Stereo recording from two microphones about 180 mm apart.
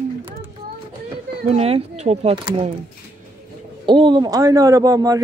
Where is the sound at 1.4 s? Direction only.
35° right (ahead or behind).